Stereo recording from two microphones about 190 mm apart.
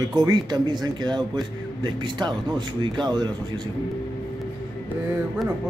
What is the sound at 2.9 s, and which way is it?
Speech, 25° right (ahead or behind).